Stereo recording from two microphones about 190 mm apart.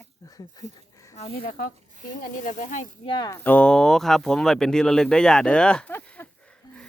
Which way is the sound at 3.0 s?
25° left (ahead or behind).